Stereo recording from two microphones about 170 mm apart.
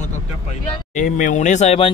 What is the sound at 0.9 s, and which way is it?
Speech, 50° left (ahead or behind).